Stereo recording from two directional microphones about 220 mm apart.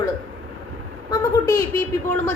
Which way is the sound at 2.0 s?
10° left (ahead or behind).